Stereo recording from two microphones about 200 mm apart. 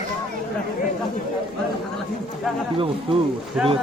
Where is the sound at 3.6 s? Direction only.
5° right (ahead or behind).